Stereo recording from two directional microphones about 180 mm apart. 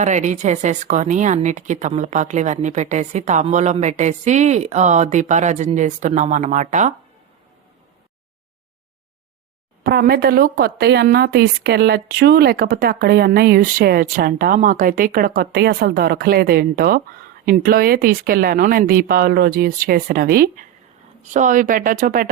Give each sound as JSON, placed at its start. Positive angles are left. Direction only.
{"t": 0.0, "sound": "speech", "side_deg": -40}
{"t": 9.8, "sound": "a woman's voice", "side_deg": -60}
{"t": 21.3, "sound": "speech", "side_deg": -45}